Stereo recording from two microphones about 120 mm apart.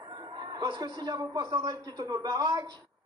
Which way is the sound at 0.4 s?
30° right (ahead or behind).